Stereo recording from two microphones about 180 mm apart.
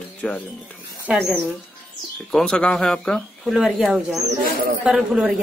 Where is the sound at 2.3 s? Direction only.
5° left (ahead or behind).